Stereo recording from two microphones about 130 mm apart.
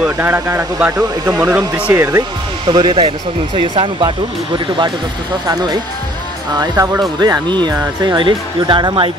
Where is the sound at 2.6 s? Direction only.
40° right (ahead or behind).